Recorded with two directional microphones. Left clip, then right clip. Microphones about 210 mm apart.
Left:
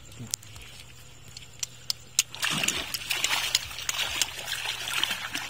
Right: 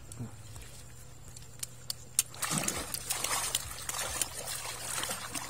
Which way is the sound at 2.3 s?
45° right (ahead or behind).